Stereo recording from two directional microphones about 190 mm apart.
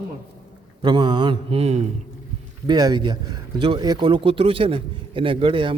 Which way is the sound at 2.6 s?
20° right (ahead or behind).